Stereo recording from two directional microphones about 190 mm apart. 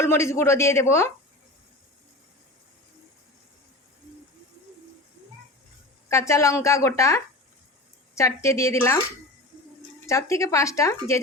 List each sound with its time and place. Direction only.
0.0 s a woman's voice: 15° left (ahead or behind)
6.1 s a woman's voice: 15° left (ahead or behind)
10.1 s a woman's voice: 15° left (ahead or behind)